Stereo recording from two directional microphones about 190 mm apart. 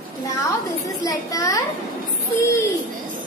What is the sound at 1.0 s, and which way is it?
Speech, 20° left (ahead or behind).